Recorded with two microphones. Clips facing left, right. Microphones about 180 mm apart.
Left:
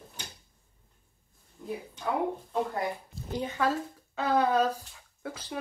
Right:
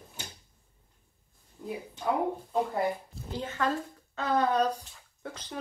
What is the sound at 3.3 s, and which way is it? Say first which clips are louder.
A woman's voice: left 2 dB; 15° left (ahead or behind).